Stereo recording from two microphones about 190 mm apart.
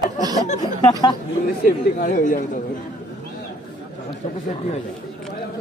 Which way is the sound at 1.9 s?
45° left (ahead or behind).